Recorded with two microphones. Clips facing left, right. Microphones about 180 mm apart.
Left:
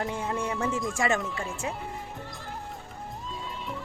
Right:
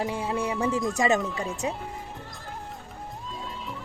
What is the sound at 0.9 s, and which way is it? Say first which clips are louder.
Speech: right 4 dB; 20° right (ahead or behind).